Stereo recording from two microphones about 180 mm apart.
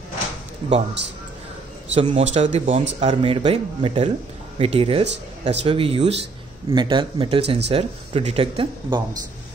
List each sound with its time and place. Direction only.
2.0 s speech: 35° right (ahead or behind)